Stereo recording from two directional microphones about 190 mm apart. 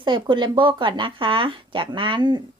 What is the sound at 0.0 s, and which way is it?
Speech, 25° right (ahead or behind).